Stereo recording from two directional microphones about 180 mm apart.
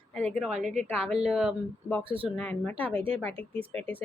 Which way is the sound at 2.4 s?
5° left (ahead or behind).